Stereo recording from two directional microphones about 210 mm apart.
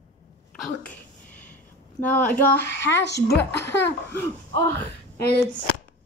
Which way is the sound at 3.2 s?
15° left (ahead or behind).